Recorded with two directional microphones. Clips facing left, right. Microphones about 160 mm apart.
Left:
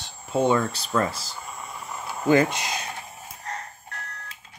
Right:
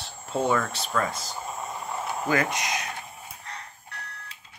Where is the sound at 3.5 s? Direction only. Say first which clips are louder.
Left 10 dB; 45° left (ahead or behind).